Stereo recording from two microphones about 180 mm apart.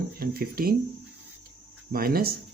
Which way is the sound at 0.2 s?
55° right (ahead or behind).